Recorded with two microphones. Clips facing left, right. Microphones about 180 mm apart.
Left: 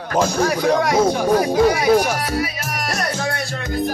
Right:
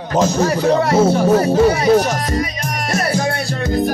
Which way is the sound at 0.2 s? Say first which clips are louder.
Right 2 dB; 10° left (ahead or behind).